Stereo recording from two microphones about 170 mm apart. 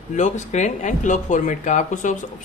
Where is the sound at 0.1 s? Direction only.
45° left (ahead or behind).